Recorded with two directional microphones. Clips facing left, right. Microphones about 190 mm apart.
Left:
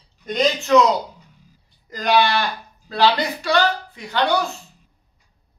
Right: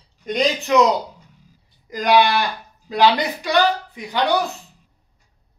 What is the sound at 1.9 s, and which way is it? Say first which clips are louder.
Speech: right 2 dB; 15° right (ahead or behind).